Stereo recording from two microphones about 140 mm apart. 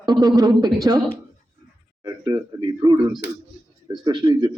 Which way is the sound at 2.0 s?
20° right (ahead or behind).